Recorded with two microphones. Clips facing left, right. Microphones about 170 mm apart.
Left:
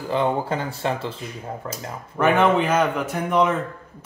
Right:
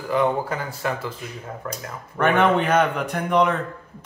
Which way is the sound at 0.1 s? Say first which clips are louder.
Right 1 dB; 25° left (ahead or behind).